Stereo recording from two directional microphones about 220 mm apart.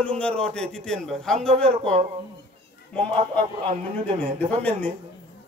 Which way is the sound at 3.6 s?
25° right (ahead or behind).